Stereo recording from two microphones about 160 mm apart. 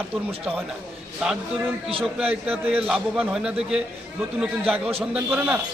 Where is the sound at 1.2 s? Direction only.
5° right (ahead or behind).